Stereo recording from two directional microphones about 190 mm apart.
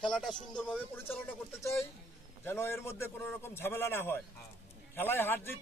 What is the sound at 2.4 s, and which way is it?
A man's voice, 10° left (ahead or behind).